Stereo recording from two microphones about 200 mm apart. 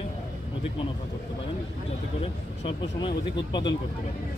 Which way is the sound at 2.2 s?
25° left (ahead or behind).